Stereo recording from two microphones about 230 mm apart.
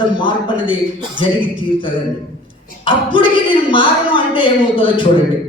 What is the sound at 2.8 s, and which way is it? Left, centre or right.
Speech, left.